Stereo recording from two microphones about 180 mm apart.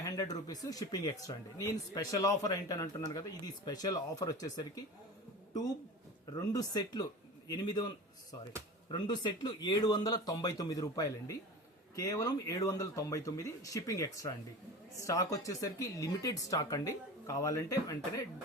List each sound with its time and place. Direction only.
0.0 s speech: 20° left (ahead or behind)
6.3 s speech: 20° left (ahead or behind)
8.9 s speech: 25° left (ahead or behind)